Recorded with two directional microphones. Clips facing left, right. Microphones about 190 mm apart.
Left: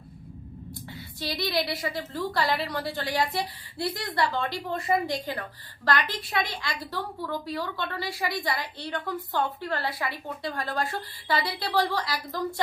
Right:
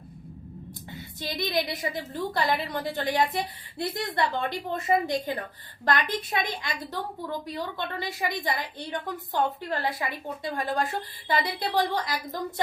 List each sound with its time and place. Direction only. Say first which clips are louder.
0.9 s a woman's voice: left 1 dB; 20° right (ahead or behind)